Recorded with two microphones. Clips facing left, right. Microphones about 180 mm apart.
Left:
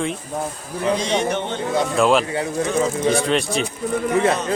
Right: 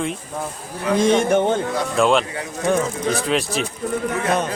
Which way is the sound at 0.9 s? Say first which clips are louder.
Right 9 dB; 50° right (ahead or behind).